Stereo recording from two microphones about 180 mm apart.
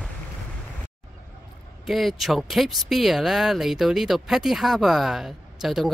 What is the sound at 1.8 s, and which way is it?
Speech, centre (ahead or behind).